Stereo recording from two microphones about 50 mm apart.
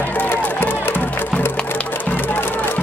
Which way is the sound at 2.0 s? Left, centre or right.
Left.